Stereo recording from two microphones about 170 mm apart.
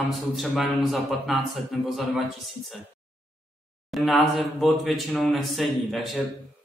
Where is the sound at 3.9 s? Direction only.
Centre (ahead or behind).